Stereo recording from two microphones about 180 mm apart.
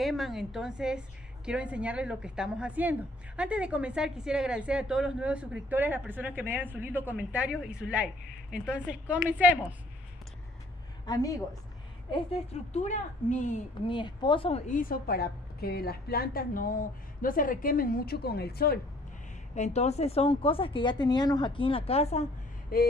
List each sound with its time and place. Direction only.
0.0 s a woman's voice: centre (ahead or behind)
11.1 s speech: 20° left (ahead or behind)
12.7 s a woman's voice: 40° left (ahead or behind)
13.8 s speech: 25° left (ahead or behind)
14.7 s a woman's voice: 50° left (ahead or behind)
19.5 s a woman's voice: 40° left (ahead or behind)
22.7 s a sound: 55° left (ahead or behind)